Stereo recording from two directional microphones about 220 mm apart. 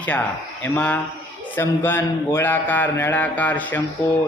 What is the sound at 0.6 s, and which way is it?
A man's voice, 5° left (ahead or behind).